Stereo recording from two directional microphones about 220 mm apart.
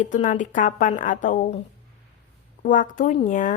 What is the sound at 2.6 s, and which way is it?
Speech, 40° left (ahead or behind).